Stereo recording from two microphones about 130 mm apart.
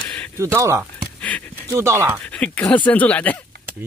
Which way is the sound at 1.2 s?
10° left (ahead or behind).